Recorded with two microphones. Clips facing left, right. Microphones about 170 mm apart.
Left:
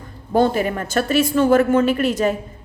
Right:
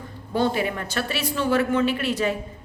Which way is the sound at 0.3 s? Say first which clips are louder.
Left 6 dB; 45° left (ahead or behind).